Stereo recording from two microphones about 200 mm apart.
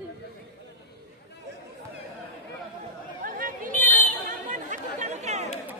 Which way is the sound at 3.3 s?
45° right (ahead or behind).